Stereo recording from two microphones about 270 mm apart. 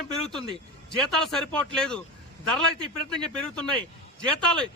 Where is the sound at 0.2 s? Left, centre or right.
Centre.